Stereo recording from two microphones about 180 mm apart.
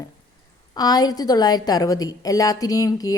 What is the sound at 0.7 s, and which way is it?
A woman's voice, 20° left (ahead or behind).